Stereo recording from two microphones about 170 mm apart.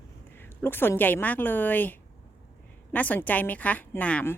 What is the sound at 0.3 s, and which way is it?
Speech, 10° left (ahead or behind).